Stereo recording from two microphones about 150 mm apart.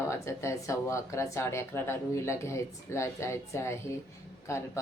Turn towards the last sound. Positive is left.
turn(degrees=15)  # may be behind; listen again after turning